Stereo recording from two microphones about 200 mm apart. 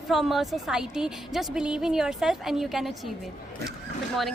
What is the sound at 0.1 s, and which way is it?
Speech, centre (ahead or behind).